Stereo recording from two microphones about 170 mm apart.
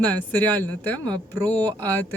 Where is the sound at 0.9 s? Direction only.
25° right (ahead or behind).